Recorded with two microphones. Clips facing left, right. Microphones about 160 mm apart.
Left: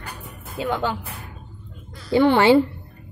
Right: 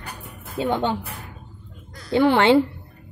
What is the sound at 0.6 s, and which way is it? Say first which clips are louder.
Speech: right 2 dB; 25° right (ahead or behind).